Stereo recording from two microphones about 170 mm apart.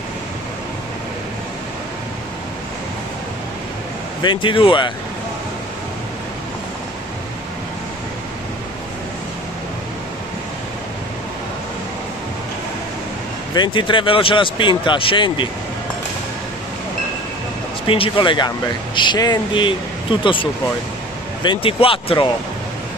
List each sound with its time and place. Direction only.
4.2 s speech: 30° left (ahead or behind)
13.6 s speech: 30° left (ahead or behind)
17.8 s speech: 30° left (ahead or behind)